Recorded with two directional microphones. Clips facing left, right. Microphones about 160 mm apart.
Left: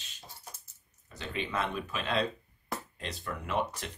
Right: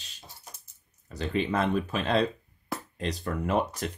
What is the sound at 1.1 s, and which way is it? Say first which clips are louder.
Speech: right 8 dB; 35° right (ahead or behind).